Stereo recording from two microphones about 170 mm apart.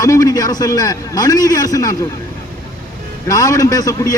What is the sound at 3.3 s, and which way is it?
Speech, 20° left (ahead or behind).